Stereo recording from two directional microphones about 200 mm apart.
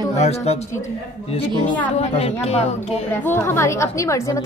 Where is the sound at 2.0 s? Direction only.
30° left (ahead or behind).